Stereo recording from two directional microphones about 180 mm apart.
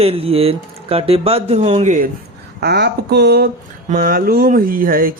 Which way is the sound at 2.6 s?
65° right (ahead or behind).